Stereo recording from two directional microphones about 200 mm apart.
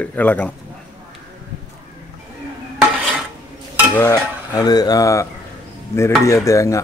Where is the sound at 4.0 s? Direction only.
15° left (ahead or behind).